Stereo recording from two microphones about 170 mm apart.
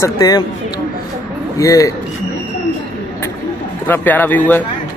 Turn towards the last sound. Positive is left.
turn(degrees=10)  # may be behind; listen again after turning